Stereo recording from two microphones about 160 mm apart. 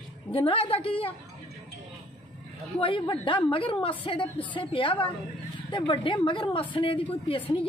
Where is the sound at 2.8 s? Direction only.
30° left (ahead or behind).